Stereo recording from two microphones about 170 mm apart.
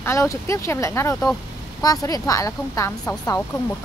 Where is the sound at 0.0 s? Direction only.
15° left (ahead or behind).